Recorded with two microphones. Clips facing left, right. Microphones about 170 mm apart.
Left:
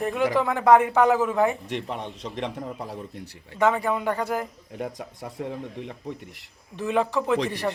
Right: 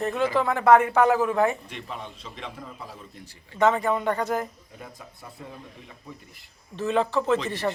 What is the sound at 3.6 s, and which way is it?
Speech, 10° left (ahead or behind).